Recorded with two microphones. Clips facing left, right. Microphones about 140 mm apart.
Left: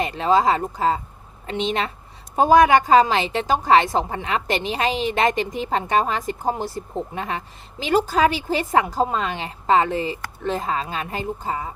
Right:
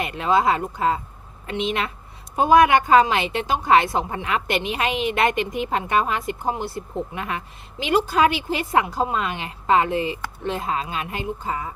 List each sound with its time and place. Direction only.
0.0 s speech: 35° left (ahead or behind)